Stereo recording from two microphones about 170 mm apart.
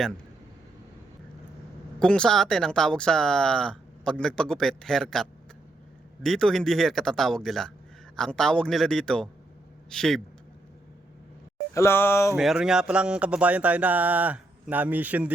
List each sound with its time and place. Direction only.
2.0 s speech: 5° left (ahead or behind)
11.7 s a sound: 15° left (ahead or behind)
12.4 s speech: centre (ahead or behind)